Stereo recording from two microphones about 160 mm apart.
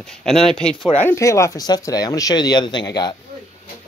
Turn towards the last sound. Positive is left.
turn(degrees=25)  # may be behind; listen again after turning